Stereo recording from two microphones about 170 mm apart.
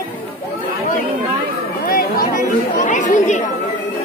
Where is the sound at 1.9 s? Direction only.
55° left (ahead or behind).